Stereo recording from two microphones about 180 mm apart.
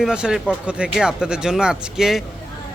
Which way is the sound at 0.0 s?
5° right (ahead or behind).